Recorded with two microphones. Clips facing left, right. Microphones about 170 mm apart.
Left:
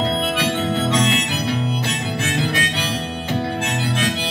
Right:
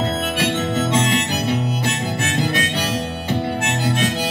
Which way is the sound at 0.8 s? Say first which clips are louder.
Even; 45° right (ahead or behind).